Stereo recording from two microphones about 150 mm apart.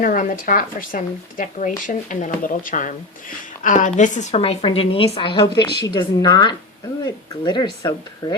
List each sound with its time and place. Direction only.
0.0 s speech: 65° left (ahead or behind); by 8.4 s 25° left (ahead or behind)